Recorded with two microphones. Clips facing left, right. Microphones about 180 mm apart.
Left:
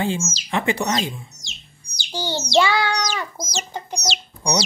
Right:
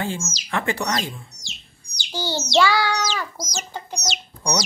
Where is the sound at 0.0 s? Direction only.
20° left (ahead or behind).